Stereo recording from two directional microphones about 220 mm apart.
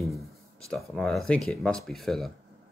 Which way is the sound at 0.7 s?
Centre (ahead or behind).